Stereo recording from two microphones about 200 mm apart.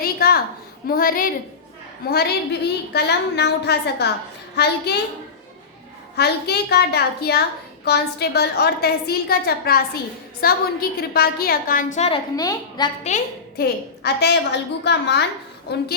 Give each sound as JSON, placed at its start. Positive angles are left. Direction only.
{"t": 0.0, "sound": "a sound", "side_deg": 50}
{"t": 0.9, "sound": "a woman's voice", "side_deg": 45}
{"t": 6.1, "sound": "a woman's voice", "side_deg": 55}
{"t": 12.4, "sound": "a woman's voice", "side_deg": 20}
{"t": 13.6, "sound": "a woman's voice", "side_deg": 55}